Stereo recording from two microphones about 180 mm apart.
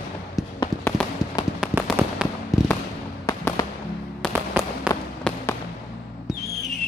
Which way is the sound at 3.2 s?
15° left (ahead or behind).